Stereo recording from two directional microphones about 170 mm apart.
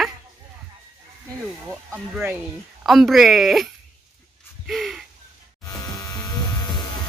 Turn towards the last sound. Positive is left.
turn(degrees=25)  # may be behind; listen again after turning